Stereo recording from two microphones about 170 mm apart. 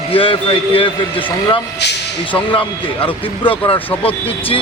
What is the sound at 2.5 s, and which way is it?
A man's voice, 30° left (ahead or behind).